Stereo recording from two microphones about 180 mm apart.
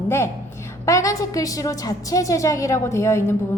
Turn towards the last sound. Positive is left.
turn(degrees=15)  # may be behind; listen again after turning